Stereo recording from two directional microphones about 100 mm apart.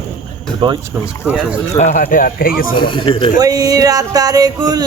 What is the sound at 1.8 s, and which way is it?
Speech, 75° left (ahead or behind).